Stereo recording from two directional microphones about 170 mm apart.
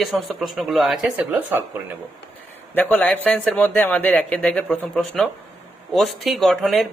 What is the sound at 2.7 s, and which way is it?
Speech, 10° left (ahead or behind).